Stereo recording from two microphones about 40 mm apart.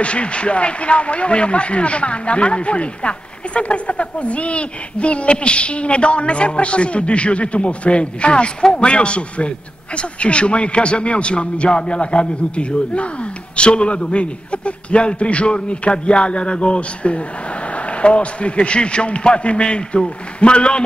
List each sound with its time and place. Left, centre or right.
0.0 s a man's voice: left